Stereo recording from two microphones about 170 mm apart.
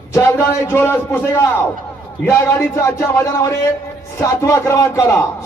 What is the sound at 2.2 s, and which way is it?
A man's voice, 15° left (ahead or behind).